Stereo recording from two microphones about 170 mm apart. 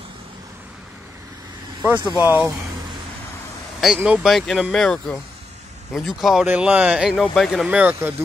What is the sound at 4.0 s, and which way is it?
A man's voice, 5° right (ahead or behind).